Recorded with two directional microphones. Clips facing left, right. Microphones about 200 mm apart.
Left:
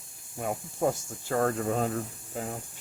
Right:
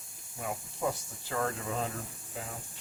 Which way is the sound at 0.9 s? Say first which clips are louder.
Left 5 dB; 45° left (ahead or behind).